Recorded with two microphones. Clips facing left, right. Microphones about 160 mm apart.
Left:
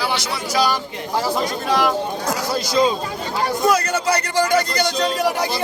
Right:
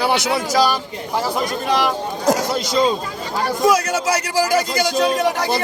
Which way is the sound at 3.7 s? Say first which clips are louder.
Right 1 dB; 10° right (ahead or behind).